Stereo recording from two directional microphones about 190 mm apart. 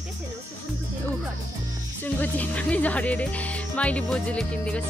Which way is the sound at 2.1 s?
10° left (ahead or behind).